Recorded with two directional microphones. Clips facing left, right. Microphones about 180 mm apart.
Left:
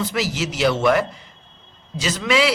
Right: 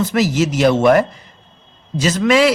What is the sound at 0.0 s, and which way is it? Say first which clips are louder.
A man's voice: right 7 dB; 45° right (ahead or behind).